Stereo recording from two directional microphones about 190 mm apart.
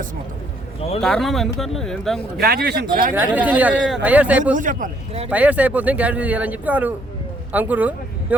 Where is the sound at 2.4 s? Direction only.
55° right (ahead or behind).